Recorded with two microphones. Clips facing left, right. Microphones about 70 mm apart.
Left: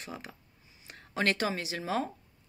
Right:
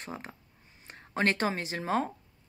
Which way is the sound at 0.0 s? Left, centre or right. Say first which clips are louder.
Right 2 dB; right.